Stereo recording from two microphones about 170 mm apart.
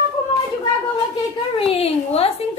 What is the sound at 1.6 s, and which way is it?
Speech, 35° left (ahead or behind).